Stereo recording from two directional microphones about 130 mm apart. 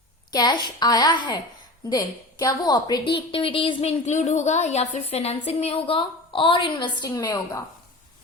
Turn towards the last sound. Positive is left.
turn(degrees=30)  # may be behind; listen again after turning